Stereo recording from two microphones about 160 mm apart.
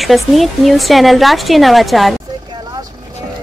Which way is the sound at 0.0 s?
Centre (ahead or behind).